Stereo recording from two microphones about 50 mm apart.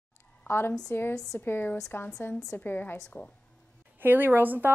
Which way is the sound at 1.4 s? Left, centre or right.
Left.